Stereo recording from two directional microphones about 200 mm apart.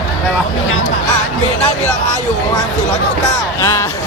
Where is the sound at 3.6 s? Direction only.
15° left (ahead or behind).